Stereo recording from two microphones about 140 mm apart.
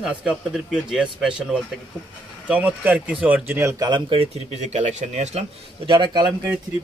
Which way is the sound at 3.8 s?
35° right (ahead or behind).